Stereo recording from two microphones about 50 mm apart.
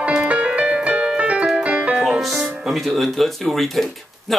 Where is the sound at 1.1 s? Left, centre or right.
Right.